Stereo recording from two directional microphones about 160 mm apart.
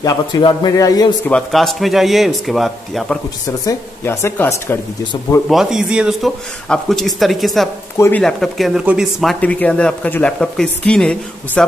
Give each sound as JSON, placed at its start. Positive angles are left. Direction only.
{"t": 0.0, "sound": "a man's voice", "side_deg": 25}
{"t": 1.2, "sound": "speech", "side_deg": 5}
{"t": 3.4, "sound": "speech", "side_deg": 20}
{"t": 5.5, "sound": "speech", "side_deg": -5}